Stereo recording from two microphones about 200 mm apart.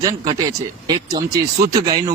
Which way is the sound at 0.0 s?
20° right (ahead or behind).